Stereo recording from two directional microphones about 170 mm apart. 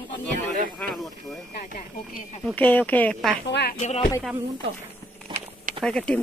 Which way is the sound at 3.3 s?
70° left (ahead or behind).